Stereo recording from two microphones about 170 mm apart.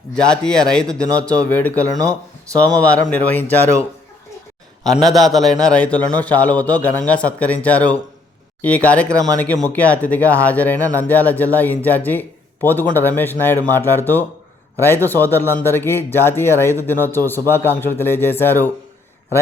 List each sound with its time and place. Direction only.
0.1 s a man's voice: 5° left (ahead or behind)
5.0 s a man's voice: centre (ahead or behind)
9.0 s speech: 20° right (ahead or behind)
9.4 s a man's voice: 10° left (ahead or behind)